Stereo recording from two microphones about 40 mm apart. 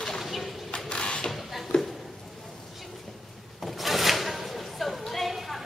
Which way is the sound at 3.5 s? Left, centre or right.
Centre.